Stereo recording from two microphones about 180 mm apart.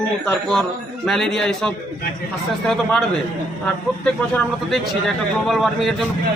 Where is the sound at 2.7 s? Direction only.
5° left (ahead or behind).